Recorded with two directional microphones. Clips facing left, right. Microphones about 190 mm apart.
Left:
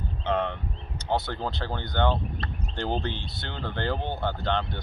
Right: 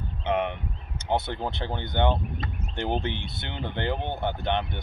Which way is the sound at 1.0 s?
20° right (ahead or behind).